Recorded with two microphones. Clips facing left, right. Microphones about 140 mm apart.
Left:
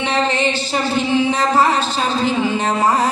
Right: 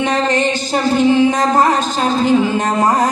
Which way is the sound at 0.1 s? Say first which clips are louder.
Right 2 dB; 45° right (ahead or behind).